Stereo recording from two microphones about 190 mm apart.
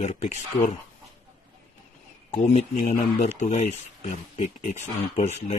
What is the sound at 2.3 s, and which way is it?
Speech, 35° left (ahead or behind).